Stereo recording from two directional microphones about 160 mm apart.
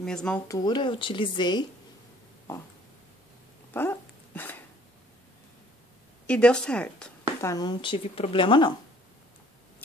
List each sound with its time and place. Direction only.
0.0 s speech: 5° left (ahead or behind)
0.5 s speech: 25° left (ahead or behind)
3.7 s dog: 15° left (ahead or behind)
6.2 s a woman's voice: 5° left (ahead or behind)
7.4 s speech: 25° left (ahead or behind)